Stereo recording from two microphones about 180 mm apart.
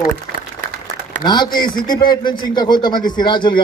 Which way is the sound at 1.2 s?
25° left (ahead or behind).